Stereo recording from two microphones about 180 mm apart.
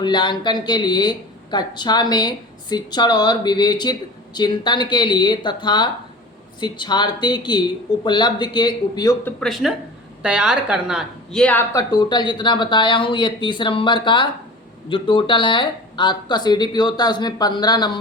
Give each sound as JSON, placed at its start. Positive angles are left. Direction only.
{"t": 0.0, "sound": "speech", "side_deg": 25}
{"t": 9.2, "sound": "a woman's voice", "side_deg": 0}
{"t": 11.7, "sound": "speech", "side_deg": 20}